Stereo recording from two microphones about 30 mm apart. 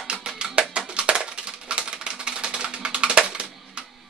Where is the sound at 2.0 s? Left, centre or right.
Right.